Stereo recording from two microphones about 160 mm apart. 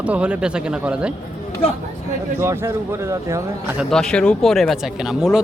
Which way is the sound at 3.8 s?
5° left (ahead or behind).